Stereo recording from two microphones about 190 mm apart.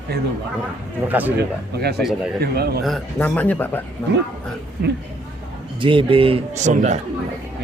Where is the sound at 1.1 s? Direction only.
10° right (ahead or behind).